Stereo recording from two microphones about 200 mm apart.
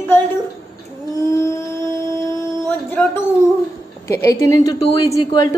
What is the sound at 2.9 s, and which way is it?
A woman's voice, 10° left (ahead or behind).